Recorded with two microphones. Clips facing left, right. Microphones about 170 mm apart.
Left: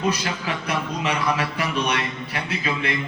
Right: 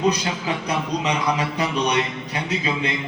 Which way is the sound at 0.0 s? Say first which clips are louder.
Right 3 dB; 20° right (ahead or behind).